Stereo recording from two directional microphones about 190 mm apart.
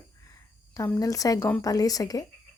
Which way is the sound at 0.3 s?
15° left (ahead or behind).